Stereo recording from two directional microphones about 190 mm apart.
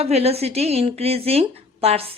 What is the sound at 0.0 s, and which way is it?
Speech, 35° right (ahead or behind).